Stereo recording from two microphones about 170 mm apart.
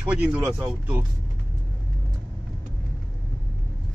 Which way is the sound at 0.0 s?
10° right (ahead or behind).